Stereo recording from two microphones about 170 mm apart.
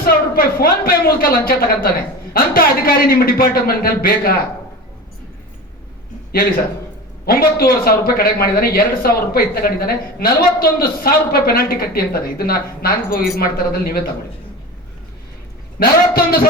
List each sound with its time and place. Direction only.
0.0 s speech: 60° left (ahead or behind)
7.3 s speech: 60° left (ahead or behind)
15.8 s speech: 60° left (ahead or behind)